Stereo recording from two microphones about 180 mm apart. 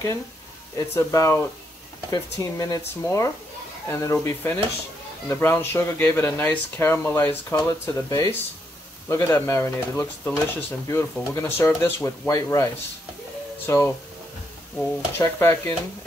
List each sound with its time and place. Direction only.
0.7 s speech: 15° left (ahead or behind)
13.7 s speech: 15° left (ahead or behind)